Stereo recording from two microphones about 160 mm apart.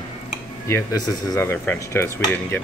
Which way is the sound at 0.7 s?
20° left (ahead or behind).